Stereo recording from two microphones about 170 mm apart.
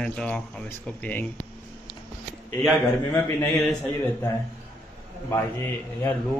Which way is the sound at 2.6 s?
10° left (ahead or behind).